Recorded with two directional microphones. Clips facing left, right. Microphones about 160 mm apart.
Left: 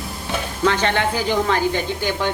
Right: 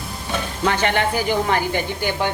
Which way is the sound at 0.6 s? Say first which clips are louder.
Left 1 dB; 15° right (ahead or behind).